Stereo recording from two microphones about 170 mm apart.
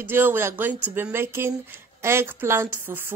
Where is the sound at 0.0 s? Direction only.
15° right (ahead or behind).